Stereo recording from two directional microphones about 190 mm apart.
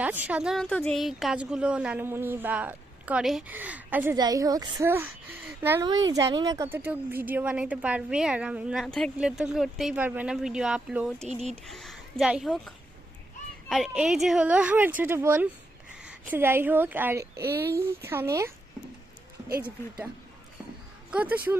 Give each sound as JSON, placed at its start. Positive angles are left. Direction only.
{"t": 0.0, "sound": "a woman's voice", "side_deg": -10}
{"t": 11.3, "sound": "speech", "side_deg": -35}
{"t": 11.5, "sound": "a woman's voice", "side_deg": 0}
{"t": 17.4, "sound": "speech", "side_deg": -55}
{"t": 17.7, "sound": "a woman's voice", "side_deg": -15}
{"t": 21.1, "sound": "a woman's voice", "side_deg": -10}